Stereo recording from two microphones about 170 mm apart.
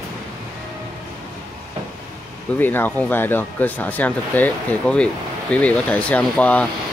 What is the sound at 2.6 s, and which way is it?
Speech, 10° left (ahead or behind).